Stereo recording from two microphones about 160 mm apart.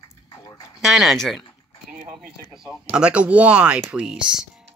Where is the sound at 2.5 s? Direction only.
5° right (ahead or behind).